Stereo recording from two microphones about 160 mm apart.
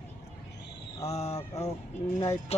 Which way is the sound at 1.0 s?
45° left (ahead or behind).